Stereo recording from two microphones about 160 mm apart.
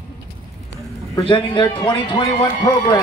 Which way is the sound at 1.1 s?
30° left (ahead or behind).